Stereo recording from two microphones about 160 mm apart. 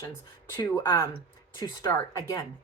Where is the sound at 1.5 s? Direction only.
25° left (ahead or behind).